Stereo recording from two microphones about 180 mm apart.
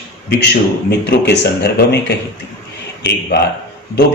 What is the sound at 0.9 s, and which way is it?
A man's voice, 65° left (ahead or behind).